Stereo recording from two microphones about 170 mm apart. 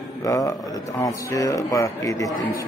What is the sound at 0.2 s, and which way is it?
A man's voice, 20° left (ahead or behind).